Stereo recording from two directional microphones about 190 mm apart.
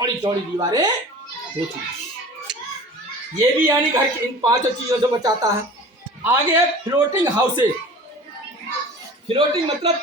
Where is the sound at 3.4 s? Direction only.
15° right (ahead or behind).